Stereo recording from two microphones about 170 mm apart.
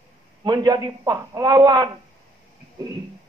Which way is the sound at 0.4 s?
25° right (ahead or behind).